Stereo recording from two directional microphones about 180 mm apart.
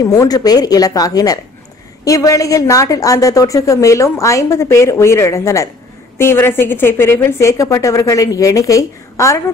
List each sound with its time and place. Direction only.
0.0 s a woman's voice: 20° left (ahead or behind)